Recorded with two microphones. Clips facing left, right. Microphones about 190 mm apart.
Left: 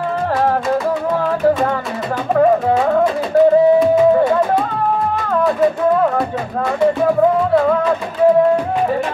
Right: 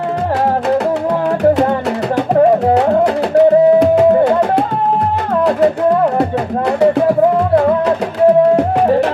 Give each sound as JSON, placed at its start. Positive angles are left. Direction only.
{"t": 1.4, "sound": "music", "side_deg": -70}
{"t": 3.0, "sound": "music", "side_deg": -70}